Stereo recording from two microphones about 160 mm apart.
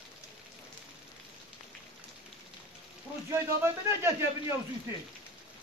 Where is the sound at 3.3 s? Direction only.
15° right (ahead or behind).